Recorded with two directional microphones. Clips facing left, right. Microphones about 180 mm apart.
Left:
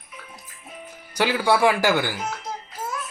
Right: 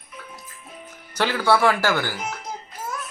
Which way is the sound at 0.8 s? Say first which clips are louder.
Left 1 dB; 10° left (ahead or behind).